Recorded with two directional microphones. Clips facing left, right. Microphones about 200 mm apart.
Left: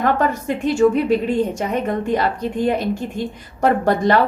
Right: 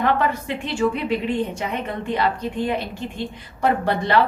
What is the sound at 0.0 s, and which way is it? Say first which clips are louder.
A woman's voice: left 2 dB; 45° left (ahead or behind).